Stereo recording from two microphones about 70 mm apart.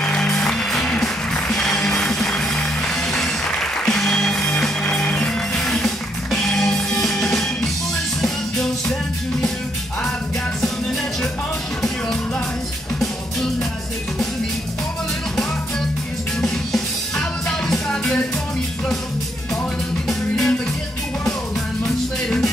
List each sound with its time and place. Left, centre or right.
0.0 s music: centre
13.0 s music: centre
16.3 s music: centre
20.1 s music: centre
21.8 s music: centre